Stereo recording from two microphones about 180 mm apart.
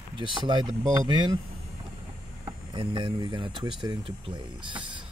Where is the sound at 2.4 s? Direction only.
25° right (ahead or behind).